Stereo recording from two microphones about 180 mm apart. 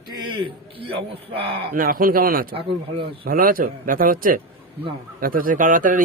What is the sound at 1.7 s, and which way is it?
Speech, 50° right (ahead or behind).